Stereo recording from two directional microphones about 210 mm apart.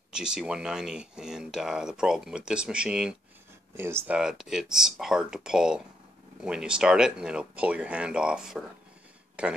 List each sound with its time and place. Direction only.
0.1 s speech: 5° right (ahead or behind)